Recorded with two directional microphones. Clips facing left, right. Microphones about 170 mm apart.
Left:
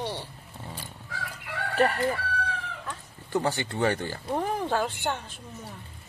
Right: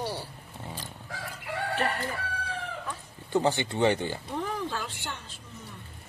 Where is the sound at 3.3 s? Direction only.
20° right (ahead or behind).